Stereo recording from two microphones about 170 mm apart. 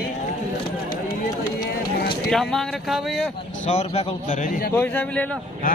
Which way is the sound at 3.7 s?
45° left (ahead or behind).